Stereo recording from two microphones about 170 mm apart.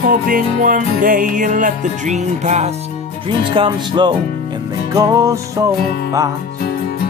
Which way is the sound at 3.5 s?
30° right (ahead or behind).